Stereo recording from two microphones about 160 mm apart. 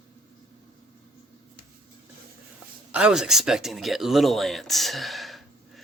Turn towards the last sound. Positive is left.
turn(degrees=0)  # may be behind; listen again after turning